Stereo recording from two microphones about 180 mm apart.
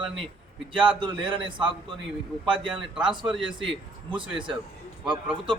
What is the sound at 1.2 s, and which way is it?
Speech, 30° right (ahead or behind).